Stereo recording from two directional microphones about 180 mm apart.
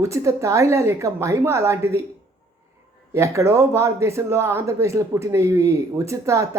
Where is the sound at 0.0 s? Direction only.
15° right (ahead or behind).